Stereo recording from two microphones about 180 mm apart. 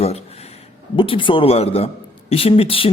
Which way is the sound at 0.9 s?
30° left (ahead or behind).